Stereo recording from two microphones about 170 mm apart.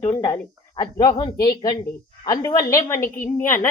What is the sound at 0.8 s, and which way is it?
A man's voice, 25° left (ahead or behind).